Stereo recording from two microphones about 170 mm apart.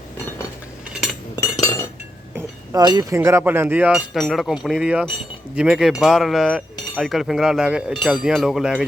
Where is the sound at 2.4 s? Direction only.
25° right (ahead or behind).